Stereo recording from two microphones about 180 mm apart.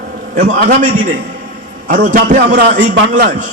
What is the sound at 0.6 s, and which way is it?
Speech, 60° right (ahead or behind).